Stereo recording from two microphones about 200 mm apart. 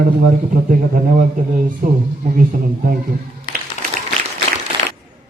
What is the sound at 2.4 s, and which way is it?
Speech, 40° right (ahead or behind).